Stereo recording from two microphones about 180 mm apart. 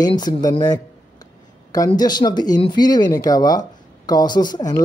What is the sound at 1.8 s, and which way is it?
Speech, 25° left (ahead or behind).